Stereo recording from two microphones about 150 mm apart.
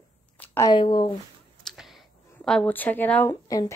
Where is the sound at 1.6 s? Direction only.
Centre (ahead or behind).